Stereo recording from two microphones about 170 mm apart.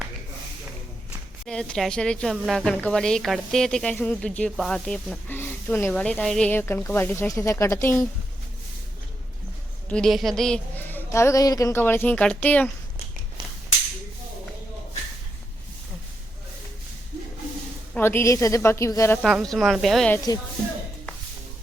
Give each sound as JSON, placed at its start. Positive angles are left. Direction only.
{"t": 1.5, "sound": "speech", "side_deg": 5}
{"t": 9.9, "sound": "speech", "side_deg": 0}
{"t": 17.9, "sound": "speech", "side_deg": 15}
{"t": 19.2, "sound": "speech", "side_deg": 0}
{"t": 20.1, "sound": "speech", "side_deg": 20}